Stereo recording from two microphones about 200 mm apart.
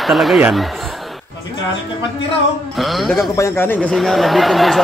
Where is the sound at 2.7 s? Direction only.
Centre (ahead or behind).